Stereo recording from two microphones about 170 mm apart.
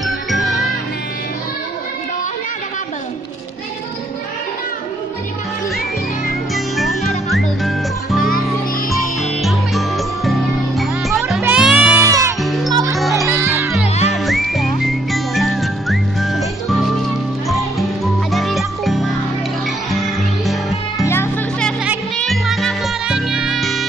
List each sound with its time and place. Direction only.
0.0 s music: centre (ahead or behind)
6.5 s music: centre (ahead or behind)
9.2 s music: centre (ahead or behind)
12.1 s music: 15° right (ahead or behind)
12.4 s music: centre (ahead or behind)
13.3 s music: 15° right (ahead or behind)
14.1 s music: centre (ahead or behind)
21.0 s music: 15° left (ahead or behind)